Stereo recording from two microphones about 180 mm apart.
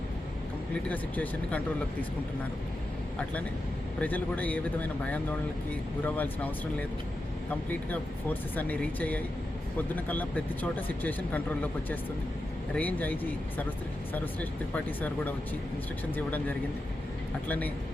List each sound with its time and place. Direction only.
0.9 s speech: 10° left (ahead or behind)
4.0 s speech: 10° left (ahead or behind)
6.1 s speech: 10° left (ahead or behind)
14.7 s speech: 10° left (ahead or behind)